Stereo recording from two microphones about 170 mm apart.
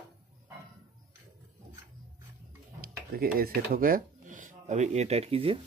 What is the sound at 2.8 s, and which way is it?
Tick-tock, 60° right (ahead or behind).